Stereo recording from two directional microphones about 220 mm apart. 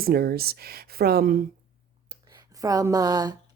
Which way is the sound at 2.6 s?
15° right (ahead or behind).